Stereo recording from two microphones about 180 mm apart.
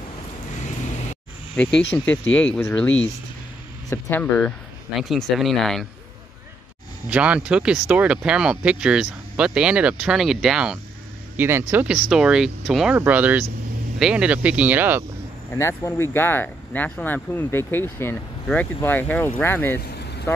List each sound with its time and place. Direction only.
1.6 s speech: 5° left (ahead or behind)
3.9 s speech: 10° left (ahead or behind)
7.1 s speech: 5° right (ahead or behind)
15.5 s speech: 15° left (ahead or behind)
19.8 s vehicle: 65° left (ahead or behind)